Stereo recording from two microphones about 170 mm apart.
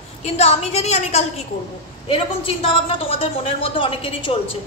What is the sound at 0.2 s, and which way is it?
A woman's voice, 40° left (ahead or behind).